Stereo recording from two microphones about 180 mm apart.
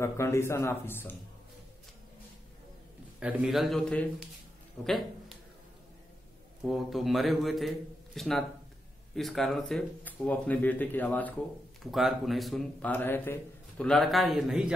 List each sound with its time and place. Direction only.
0.0 s speech: 15° left (ahead or behind)
3.2 s a man's voice: 5° right (ahead or behind)
6.6 s a man's voice: centre (ahead or behind)